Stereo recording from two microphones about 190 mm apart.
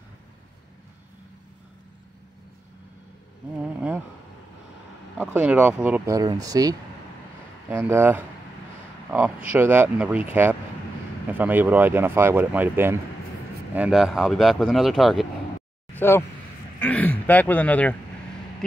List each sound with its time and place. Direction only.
5.3 s speech: 5° right (ahead or behind)
9.5 s speech: 10° right (ahead or behind)
15.9 s speech: 10° left (ahead or behind)